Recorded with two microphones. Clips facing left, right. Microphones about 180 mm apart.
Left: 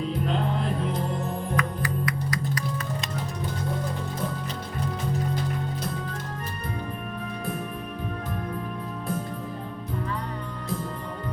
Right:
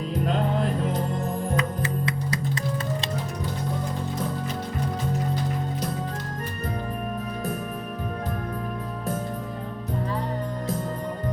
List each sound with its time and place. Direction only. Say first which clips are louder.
1.5 s music: right 1 dB; 25° right (ahead or behind)